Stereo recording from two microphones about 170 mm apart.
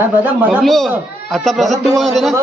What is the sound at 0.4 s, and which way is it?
A man's voice, 10° right (ahead or behind).